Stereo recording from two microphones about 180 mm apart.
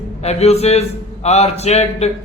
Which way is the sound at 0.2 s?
35° left (ahead or behind).